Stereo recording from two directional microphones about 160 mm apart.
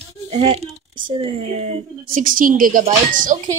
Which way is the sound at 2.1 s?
60° right (ahead or behind).